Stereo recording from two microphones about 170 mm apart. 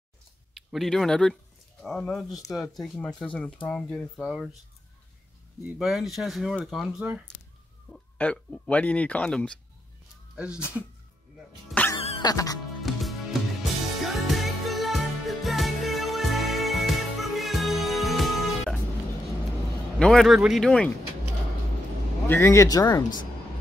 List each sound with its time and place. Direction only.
0.6 s speech: centre (ahead or behind)
5.6 s speech: 5° right (ahead or behind)
10.3 s speech: 5° right (ahead or behind)
11.7 s music: 10° left (ahead or behind)
12.0 s music: 35° left (ahead or behind)
12.3 s speech: 20° left (ahead or behind)
12.8 s music: centre (ahead or behind)
20.0 s speech: centre (ahead or behind)
22.3 s speech: 15° left (ahead or behind)